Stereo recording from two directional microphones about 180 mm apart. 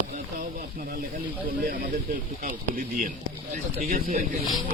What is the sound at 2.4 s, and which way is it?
Speech, 50° right (ahead or behind).